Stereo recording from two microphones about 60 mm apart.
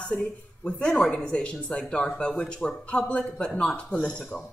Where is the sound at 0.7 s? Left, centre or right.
Centre.